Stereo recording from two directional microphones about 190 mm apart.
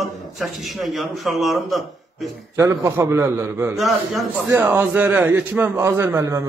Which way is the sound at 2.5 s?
15° right (ahead or behind).